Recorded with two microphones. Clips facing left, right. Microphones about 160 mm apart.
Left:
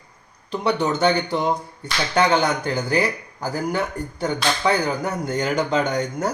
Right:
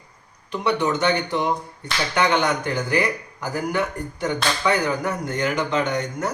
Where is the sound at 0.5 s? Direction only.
35° left (ahead or behind).